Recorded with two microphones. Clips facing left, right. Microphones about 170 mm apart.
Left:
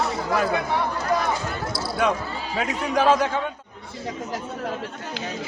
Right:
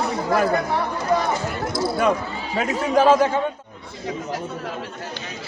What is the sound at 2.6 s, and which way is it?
Speech, 5° right (ahead or behind).